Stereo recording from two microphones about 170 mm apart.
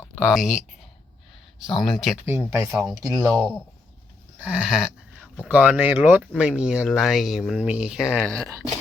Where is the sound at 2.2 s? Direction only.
15° right (ahead or behind).